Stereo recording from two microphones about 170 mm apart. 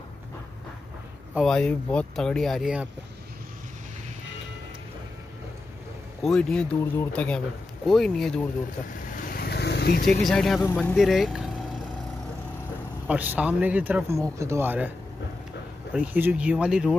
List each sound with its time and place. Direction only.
1.3 s speech: 5° left (ahead or behind)
6.2 s speech: 5° left (ahead or behind)
9.3 s vehicle: 70° left (ahead or behind)
10.2 s speech: centre (ahead or behind)
10.6 s speech: 10° left (ahead or behind)
11.0 s vehicle: centre (ahead or behind)
13.0 s speech: 10° right (ahead or behind)
15.9 s speech: 10° right (ahead or behind)